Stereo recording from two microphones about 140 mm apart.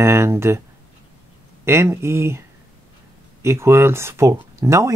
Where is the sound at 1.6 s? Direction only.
20° right (ahead or behind).